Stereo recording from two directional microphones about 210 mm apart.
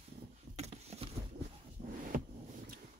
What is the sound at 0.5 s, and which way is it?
Vehicle, 30° right (ahead or behind).